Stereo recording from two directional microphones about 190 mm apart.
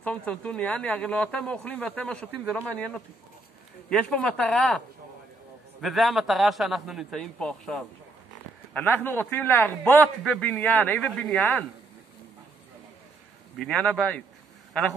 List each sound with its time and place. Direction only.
0.0 s a man's voice: 5° left (ahead or behind)
13.6 s speech: 5° left (ahead or behind)